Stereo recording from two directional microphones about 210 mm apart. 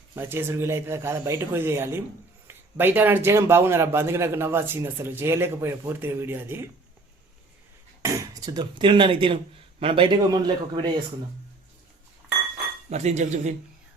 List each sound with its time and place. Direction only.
0.2 s a man's voice: 10° right (ahead or behind)
8.0 s a man's voice: 15° right (ahead or behind)
12.9 s speech: 35° right (ahead or behind)